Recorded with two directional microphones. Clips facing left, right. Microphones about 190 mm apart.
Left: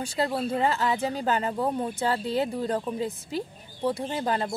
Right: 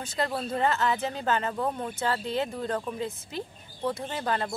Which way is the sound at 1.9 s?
30° left (ahead or behind).